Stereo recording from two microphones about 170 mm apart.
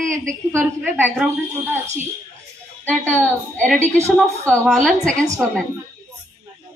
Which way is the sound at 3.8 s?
40° right (ahead or behind).